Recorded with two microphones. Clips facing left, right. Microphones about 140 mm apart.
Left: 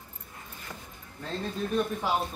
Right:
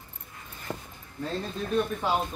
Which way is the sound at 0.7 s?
30° right (ahead or behind).